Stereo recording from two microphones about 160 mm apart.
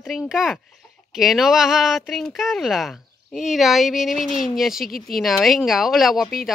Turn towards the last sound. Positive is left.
turn(degrees=0)  # may be behind; listen again after turning